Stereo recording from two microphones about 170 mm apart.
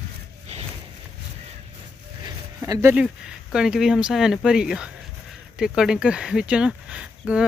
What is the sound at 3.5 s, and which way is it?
Speech, 5° right (ahead or behind).